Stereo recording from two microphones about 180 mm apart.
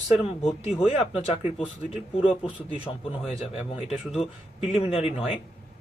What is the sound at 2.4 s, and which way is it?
Speech, 30° left (ahead or behind).